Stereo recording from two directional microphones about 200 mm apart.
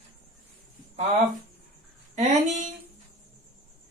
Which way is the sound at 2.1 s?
35° right (ahead or behind).